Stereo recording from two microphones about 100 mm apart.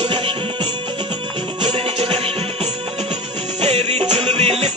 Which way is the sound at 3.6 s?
90° right.